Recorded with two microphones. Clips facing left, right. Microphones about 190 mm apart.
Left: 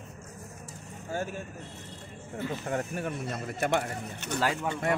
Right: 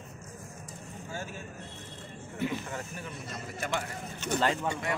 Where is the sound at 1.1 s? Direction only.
55° left (ahead or behind).